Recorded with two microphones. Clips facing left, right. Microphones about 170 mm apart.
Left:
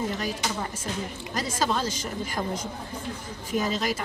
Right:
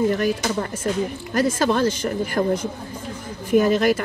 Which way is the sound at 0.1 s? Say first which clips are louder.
Right 9 dB; 60° right (ahead or behind).